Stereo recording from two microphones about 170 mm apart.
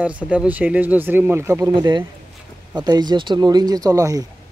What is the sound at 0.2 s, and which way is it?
Speech, 10° right (ahead or behind).